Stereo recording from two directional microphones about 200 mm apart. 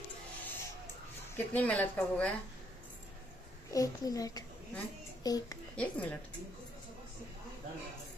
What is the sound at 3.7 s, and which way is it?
A child's voice, 15° left (ahead or behind).